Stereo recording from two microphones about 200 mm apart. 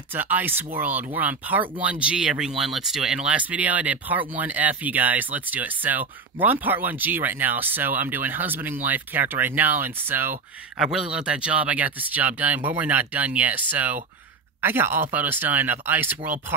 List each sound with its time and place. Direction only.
0.1 s speech: 10° right (ahead or behind)